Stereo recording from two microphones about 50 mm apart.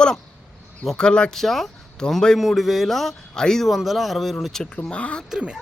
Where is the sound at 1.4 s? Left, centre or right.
Centre.